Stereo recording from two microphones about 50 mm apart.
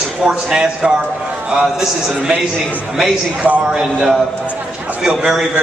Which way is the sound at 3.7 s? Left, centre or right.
Centre.